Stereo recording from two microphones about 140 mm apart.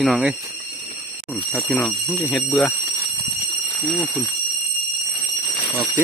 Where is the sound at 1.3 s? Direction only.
10° left (ahead or behind).